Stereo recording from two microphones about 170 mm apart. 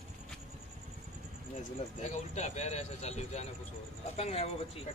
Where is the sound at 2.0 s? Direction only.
45° left (ahead or behind).